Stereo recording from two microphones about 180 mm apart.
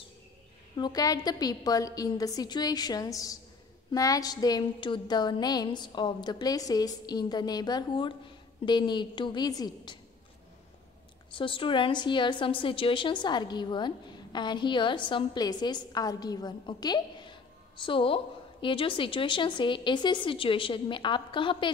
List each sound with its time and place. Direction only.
0.7 s a woman's voice: 25° left (ahead or behind)
11.3 s a woman's voice: 30° left (ahead or behind)